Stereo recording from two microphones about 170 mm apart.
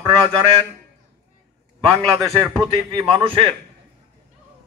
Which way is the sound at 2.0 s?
Centre (ahead or behind).